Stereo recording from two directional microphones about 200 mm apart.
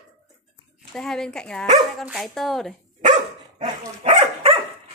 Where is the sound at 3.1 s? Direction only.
25° right (ahead or behind).